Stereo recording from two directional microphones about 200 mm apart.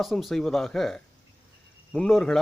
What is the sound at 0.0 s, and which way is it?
Speech, centre (ahead or behind).